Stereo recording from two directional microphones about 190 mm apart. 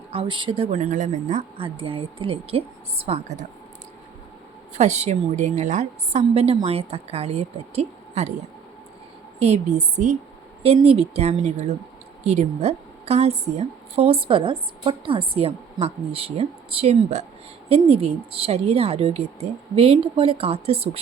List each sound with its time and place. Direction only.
0.1 s a woman's voice: 25° right (ahead or behind)
4.8 s a woman's voice: 35° right (ahead or behind)
9.4 s a woman's voice: 35° right (ahead or behind)